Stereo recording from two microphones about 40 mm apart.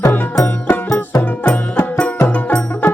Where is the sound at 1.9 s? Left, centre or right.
Left.